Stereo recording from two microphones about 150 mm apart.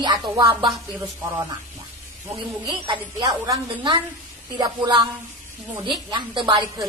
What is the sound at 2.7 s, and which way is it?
A woman's voice, 35° right (ahead or behind).